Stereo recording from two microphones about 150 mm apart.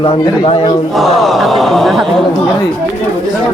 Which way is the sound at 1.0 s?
Centre (ahead or behind).